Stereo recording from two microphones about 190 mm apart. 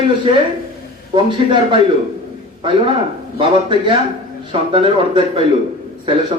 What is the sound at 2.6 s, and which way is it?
A man's voice, 30° right (ahead or behind).